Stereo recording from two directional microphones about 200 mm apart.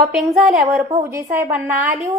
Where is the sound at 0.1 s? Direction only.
Centre (ahead or behind).